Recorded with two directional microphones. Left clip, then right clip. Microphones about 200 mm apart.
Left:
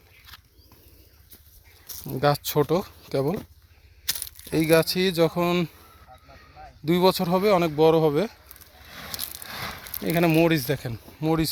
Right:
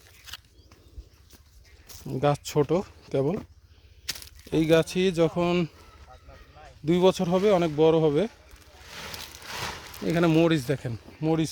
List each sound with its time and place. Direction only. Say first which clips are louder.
2.0 s speech: left 2 dB; 5° right (ahead or behind)
4.0 s a sound: left 4 dB; 55° left (ahead or behind)
4.6 s speech: left 2 dB; 5° right (ahead or behind)
6.8 s speech: left 1 dB; 5° right (ahead or behind)
8.8 s a sound: left 2 dB; 20° right (ahead or behind)
10.2 s speech: left 2 dB; 10° right (ahead or behind)